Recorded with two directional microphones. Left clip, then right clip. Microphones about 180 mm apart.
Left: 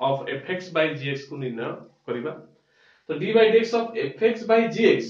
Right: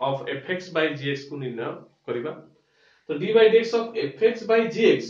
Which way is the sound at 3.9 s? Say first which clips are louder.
Right 1 dB; 15° right (ahead or behind).